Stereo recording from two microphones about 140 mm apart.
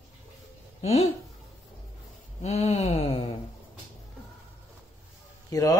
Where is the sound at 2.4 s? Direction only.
50° left (ahead or behind).